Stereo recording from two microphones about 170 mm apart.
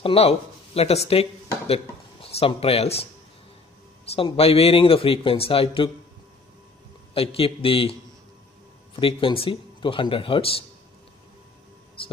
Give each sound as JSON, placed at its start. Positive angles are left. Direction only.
{"t": 0.0, "sound": "speech", "side_deg": 35}
{"t": 4.1, "sound": "speech", "side_deg": 35}
{"t": 7.2, "sound": "speech", "side_deg": 35}
{"t": 8.9, "sound": "speech", "side_deg": 30}